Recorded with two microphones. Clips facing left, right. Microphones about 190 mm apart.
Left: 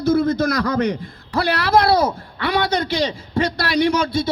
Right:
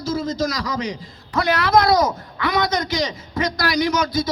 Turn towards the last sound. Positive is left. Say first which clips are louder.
# left 2 dB
turn(degrees=30)  # may be behind; listen again after turning